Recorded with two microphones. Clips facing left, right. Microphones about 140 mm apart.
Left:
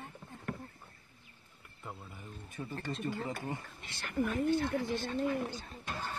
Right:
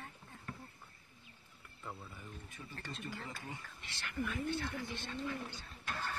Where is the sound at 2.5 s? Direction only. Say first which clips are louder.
Left 11 dB; 50° left (ahead or behind).